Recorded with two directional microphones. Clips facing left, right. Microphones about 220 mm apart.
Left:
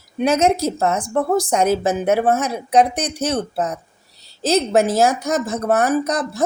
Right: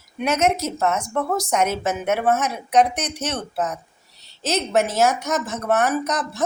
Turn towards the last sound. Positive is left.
turn(degrees=35)  # may be behind; listen again after turning